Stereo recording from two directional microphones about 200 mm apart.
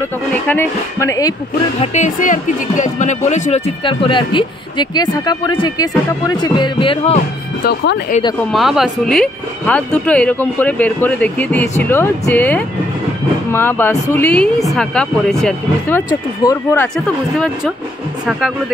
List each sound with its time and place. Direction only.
0.5 s speech: 10° left (ahead or behind)
1.8 s speech: 35° left (ahead or behind)
7.6 s speech: 55° left (ahead or behind)
8.5 s a woman's voice: centre (ahead or behind)
16.4 s speech: 20° left (ahead or behind)
16.9 s a woman's voice: centre (ahead or behind)